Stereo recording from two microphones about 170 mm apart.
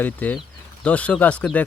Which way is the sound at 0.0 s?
10° left (ahead or behind).